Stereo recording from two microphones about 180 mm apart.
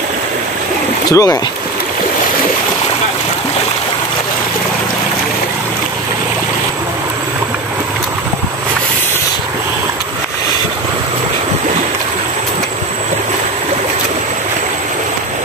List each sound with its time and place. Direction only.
1.1 s speech: 15° left (ahead or behind)